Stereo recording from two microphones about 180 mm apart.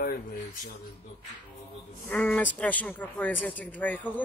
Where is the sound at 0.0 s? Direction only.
55° left (ahead or behind).